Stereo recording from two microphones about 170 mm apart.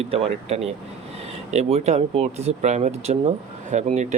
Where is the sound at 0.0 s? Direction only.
35° right (ahead or behind).